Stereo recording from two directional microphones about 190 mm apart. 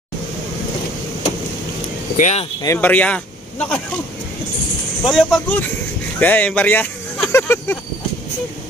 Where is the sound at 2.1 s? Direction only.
40° left (ahead or behind).